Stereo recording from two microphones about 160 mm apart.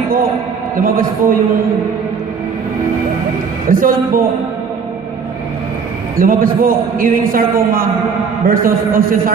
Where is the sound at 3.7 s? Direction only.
60° right (ahead or behind).